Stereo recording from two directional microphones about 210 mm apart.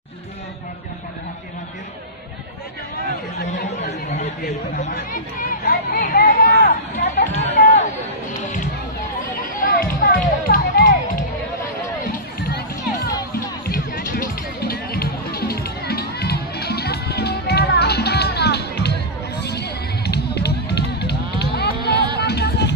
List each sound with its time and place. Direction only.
3.8 s chatter: 35° left (ahead or behind)
5.4 s a sound: 45° left (ahead or behind)
7.3 s chatter: 35° left (ahead or behind)
8.4 s run: 35° left (ahead or behind)
9.6 s music: 40° left (ahead or behind)
13.7 s music: 45° left (ahead or behind)